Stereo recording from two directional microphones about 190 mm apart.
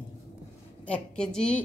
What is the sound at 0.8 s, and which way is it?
Speech, 5° left (ahead or behind).